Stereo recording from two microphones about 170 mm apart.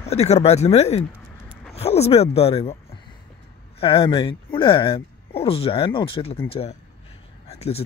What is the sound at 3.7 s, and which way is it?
Speech, 30° left (ahead or behind).